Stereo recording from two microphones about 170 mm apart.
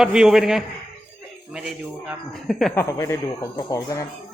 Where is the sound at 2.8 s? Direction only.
15° left (ahead or behind).